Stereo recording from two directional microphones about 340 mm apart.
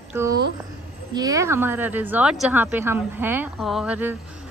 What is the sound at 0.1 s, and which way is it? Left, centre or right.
A woman's voice, centre.